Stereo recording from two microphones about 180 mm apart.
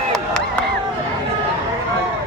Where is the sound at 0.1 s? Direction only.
5° left (ahead or behind).